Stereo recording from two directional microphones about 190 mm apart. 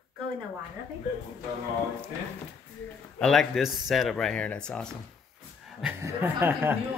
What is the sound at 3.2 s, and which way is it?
Speech, centre (ahead or behind).